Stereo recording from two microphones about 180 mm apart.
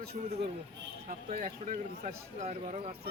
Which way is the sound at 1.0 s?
45° right (ahead or behind).